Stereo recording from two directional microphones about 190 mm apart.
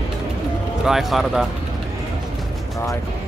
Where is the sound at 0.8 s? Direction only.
Centre (ahead or behind).